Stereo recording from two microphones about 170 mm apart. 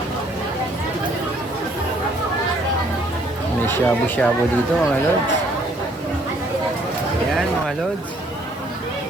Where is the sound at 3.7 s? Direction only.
10° left (ahead or behind).